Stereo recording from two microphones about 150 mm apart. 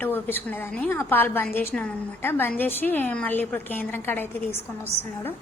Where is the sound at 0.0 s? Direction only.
15° left (ahead or behind).